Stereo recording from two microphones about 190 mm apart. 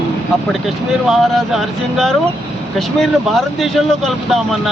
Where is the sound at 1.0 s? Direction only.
Centre (ahead or behind).